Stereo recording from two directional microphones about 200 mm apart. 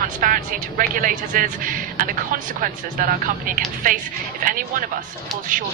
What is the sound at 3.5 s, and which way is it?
Speech, 45° right (ahead or behind).